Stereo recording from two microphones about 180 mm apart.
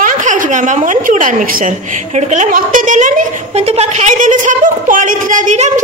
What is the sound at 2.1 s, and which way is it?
A woman's voice, 40° right (ahead or behind).